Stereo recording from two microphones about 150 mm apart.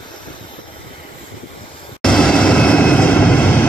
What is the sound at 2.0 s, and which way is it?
Vehicle, 5° left (ahead or behind).